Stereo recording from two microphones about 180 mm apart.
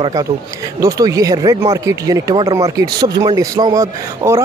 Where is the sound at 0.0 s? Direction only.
20° right (ahead or behind).